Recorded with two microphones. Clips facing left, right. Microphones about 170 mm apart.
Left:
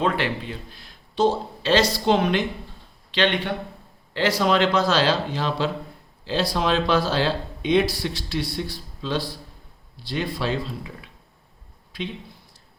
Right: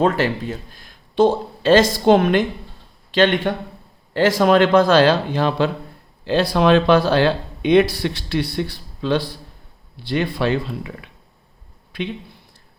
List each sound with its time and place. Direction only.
0.0 s a man's voice: 45° right (ahead or behind); by 12.1 s 60° right (ahead or behind)